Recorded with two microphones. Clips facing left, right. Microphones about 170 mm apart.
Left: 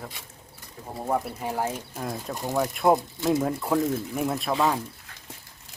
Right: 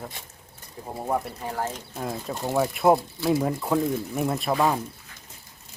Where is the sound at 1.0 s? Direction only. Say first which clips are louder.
Even; centre (ahead or behind).